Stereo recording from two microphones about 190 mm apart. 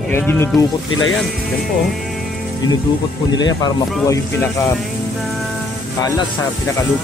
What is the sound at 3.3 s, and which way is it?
Speech, 20° left (ahead or behind).